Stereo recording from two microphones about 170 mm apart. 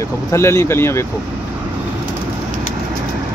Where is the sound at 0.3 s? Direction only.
15° left (ahead or behind).